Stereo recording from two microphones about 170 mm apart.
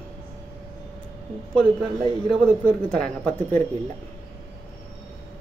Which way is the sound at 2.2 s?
5° left (ahead or behind).